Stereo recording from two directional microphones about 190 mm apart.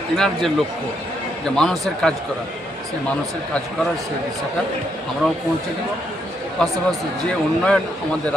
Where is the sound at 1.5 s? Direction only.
5° left (ahead or behind).